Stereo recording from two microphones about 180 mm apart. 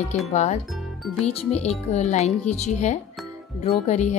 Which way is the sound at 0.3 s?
40° left (ahead or behind).